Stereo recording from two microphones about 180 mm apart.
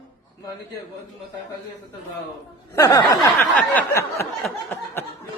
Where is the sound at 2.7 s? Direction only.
20° left (ahead or behind).